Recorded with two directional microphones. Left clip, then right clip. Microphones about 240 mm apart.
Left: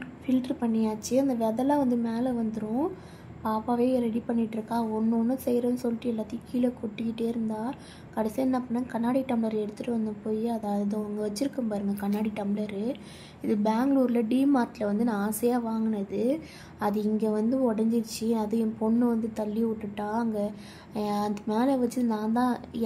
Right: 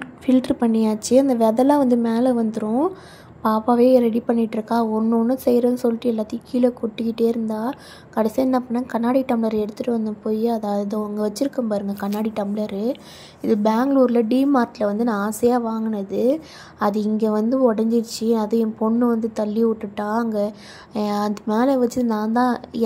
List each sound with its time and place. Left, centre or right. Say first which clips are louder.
0.3 s a woman's voice: right 10 dB; right